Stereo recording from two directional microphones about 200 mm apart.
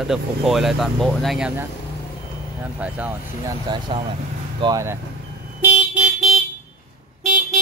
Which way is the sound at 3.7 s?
25° right (ahead or behind).